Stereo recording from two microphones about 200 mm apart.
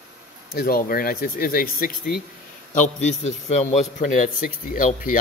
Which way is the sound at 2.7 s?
35° left (ahead or behind).